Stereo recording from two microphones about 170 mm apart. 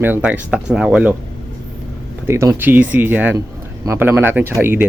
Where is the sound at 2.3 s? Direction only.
15° right (ahead or behind).